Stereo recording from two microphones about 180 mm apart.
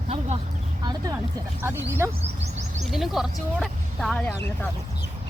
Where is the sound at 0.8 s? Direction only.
20° right (ahead or behind).